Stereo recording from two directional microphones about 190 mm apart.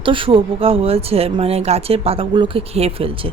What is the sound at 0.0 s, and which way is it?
A woman's voice, 25° right (ahead or behind).